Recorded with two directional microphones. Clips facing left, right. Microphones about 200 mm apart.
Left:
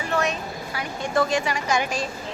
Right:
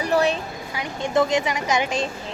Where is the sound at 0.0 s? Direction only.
35° right (ahead or behind).